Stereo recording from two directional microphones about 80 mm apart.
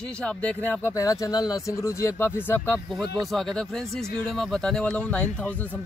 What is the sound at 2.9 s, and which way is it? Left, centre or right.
Speech, centre.